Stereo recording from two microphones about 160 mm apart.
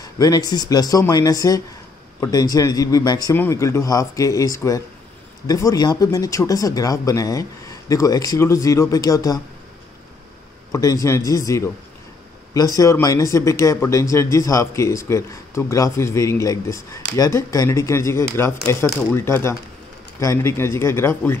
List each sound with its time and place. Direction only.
0.0 s speech: 25° left (ahead or behind)
10.7 s speech: 20° left (ahead or behind)